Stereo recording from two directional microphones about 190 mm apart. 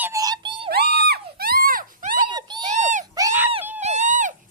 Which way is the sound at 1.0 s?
55° right (ahead or behind).